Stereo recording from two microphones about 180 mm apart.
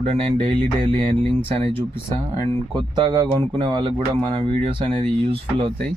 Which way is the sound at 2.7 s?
25° right (ahead or behind).